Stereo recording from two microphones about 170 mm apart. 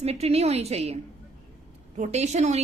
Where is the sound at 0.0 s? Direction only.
35° right (ahead or behind).